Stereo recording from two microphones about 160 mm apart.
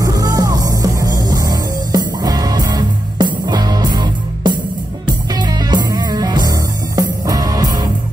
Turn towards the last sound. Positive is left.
turn(degrees=-25)  # may be behind; listen again after turning